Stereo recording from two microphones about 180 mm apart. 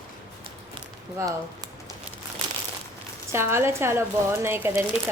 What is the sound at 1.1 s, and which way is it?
Speech, 20° right (ahead or behind).